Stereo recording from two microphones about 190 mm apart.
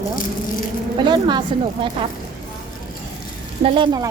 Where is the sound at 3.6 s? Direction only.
25° right (ahead or behind).